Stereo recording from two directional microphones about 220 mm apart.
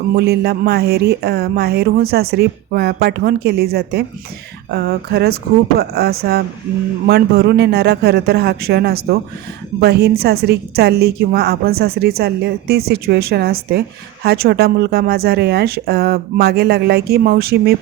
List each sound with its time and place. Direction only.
0.2 s a woman's voice: 45° right (ahead or behind)